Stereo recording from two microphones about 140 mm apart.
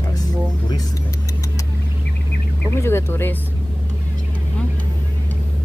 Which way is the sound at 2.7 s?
15° left (ahead or behind).